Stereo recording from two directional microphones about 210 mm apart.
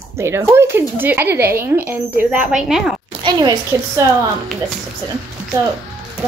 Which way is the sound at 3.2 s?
20° right (ahead or behind).